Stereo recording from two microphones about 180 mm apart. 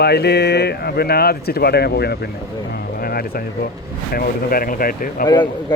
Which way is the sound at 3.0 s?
55° left (ahead or behind).